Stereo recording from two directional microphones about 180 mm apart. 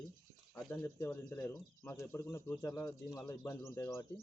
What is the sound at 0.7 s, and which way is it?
A man's voice, 20° left (ahead or behind).